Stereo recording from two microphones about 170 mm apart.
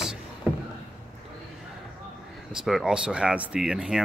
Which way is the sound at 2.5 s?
Centre (ahead or behind).